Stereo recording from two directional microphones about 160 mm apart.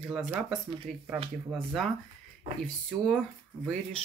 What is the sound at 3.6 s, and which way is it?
Speech, 5° left (ahead or behind).